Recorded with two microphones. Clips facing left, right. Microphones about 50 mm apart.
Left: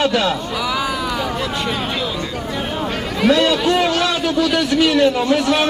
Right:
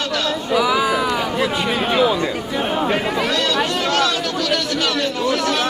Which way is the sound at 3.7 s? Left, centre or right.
Centre.